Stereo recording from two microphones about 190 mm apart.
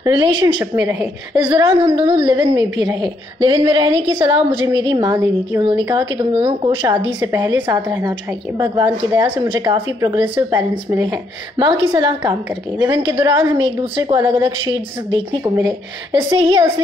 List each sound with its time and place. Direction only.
0.0 s a woman's voice: 25° right (ahead or behind)
10.2 s a woman's voice: 10° right (ahead or behind); by 16.6 s 25° right (ahead or behind)